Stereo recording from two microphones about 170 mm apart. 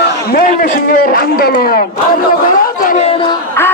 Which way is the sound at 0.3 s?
55° left (ahead or behind).